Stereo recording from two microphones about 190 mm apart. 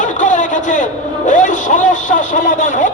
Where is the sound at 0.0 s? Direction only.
40° left (ahead or behind).